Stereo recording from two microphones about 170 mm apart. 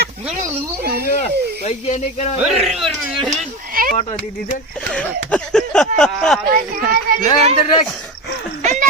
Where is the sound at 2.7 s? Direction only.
Centre (ahead or behind).